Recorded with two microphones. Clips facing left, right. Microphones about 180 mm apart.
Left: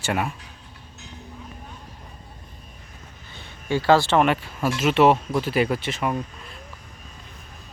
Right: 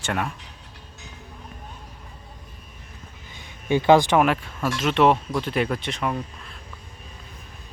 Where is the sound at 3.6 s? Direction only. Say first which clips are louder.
Right 2 dB; 20° right (ahead or behind).